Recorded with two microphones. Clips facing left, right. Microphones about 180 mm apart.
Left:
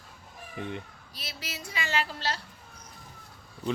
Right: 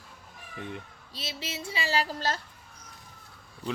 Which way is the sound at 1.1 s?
25° right (ahead or behind).